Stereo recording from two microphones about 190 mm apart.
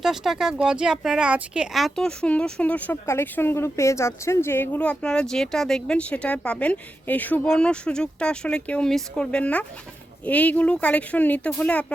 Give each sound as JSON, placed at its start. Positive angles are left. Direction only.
{"t": 0.0, "sound": "speech", "side_deg": 0}